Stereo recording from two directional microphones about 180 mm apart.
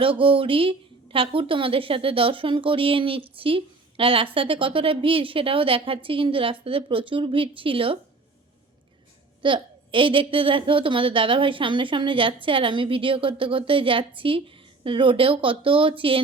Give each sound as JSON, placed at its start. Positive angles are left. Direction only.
{"t": 0.0, "sound": "a woman's voice", "side_deg": -30}
{"t": 9.4, "sound": "a woman's voice", "side_deg": -30}